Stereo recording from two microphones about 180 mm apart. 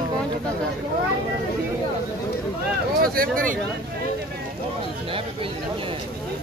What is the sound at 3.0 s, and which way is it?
Speech, 55° right (ahead or behind).